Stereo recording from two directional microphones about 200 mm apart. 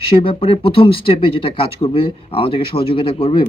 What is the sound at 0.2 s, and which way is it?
Speech, 25° left (ahead or behind).